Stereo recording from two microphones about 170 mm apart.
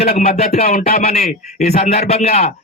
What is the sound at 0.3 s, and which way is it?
A man's voice, 40° left (ahead or behind).